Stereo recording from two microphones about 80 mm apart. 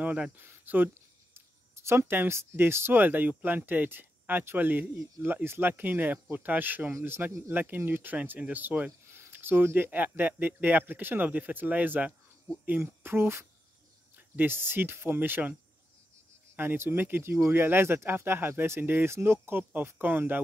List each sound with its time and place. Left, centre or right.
0.0 s speech: centre
16.5 s speech: right